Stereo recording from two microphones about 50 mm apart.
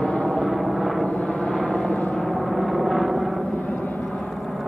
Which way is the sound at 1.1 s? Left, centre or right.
Centre.